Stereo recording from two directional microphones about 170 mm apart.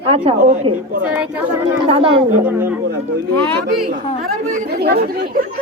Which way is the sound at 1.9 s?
30° right (ahead or behind).